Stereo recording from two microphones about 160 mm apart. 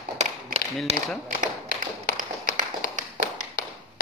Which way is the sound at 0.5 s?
45° right (ahead or behind).